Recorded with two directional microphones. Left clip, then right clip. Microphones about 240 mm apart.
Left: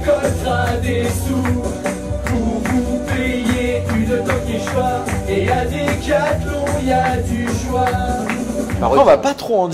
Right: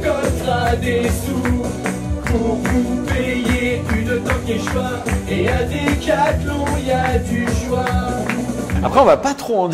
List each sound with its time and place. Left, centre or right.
8.9 s speech: right